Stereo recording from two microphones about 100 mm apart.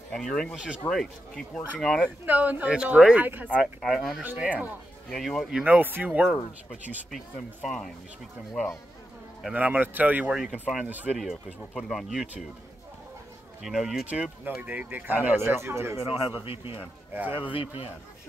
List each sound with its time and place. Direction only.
0.1 s speech: 5° left (ahead or behind)
2.2 s speech: 15° right (ahead or behind)
3.6 s speech: centre (ahead or behind)
4.4 s speech: 15° right (ahead or behind)
5.1 s speech: 5° left (ahead or behind)
5.8 s speech: 20° right (ahead or behind)
7.6 s speech: 5° left (ahead or behind)
9.4 s speech: 15° right (ahead or behind)
10.3 s speech: 5° right (ahead or behind)
10.9 s speech: 15° right (ahead or behind)
11.1 s speech: centre (ahead or behind)
13.6 s speech: 5° right (ahead or behind); by 16.0 s 25° right (ahead or behind)
16.0 s a man's voice: 70° left (ahead or behind)